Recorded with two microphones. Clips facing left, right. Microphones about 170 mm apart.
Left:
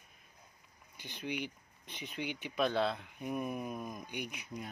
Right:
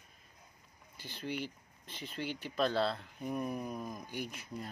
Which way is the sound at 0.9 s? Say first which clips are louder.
Even; 15° left (ahead or behind).